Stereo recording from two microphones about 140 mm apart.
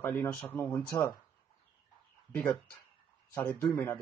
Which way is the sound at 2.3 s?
10° left (ahead or behind).